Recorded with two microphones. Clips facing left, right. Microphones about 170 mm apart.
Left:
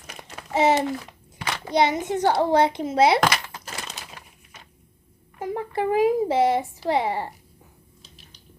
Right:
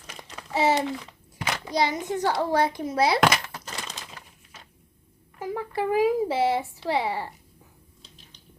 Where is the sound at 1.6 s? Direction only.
20° left (ahead or behind).